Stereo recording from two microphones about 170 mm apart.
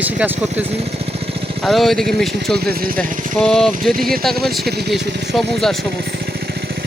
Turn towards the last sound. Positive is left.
turn(degrees=0)  # may be behind; listen again after turning